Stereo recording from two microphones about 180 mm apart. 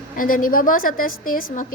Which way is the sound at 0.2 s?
50° left (ahead or behind).